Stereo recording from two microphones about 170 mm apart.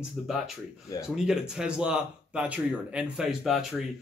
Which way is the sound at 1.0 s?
5° right (ahead or behind).